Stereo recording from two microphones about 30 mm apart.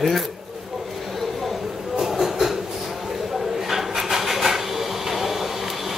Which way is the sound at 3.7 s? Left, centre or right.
Centre.